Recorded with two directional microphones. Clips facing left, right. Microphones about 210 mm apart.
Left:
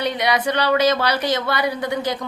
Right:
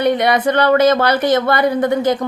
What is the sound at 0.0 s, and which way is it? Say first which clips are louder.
Speech: right 6 dB; 50° right (ahead or behind).